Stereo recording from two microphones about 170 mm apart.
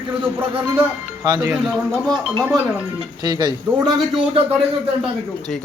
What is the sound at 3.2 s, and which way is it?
Speech, 25° right (ahead or behind).